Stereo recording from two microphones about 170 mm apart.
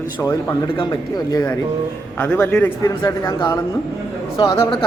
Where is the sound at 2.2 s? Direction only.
10° left (ahead or behind).